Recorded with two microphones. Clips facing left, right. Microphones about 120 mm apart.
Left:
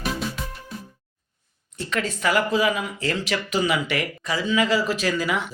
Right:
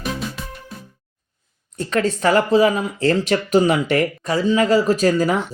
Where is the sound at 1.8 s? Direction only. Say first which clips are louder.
Right 7 dB; 40° right (ahead or behind).